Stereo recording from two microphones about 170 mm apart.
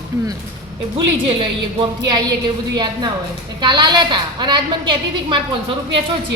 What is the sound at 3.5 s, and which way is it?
A woman's voice, 25° right (ahead or behind).